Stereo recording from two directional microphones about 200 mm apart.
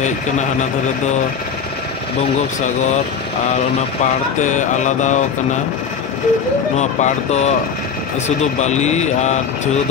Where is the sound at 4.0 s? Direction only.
40° left (ahead or behind).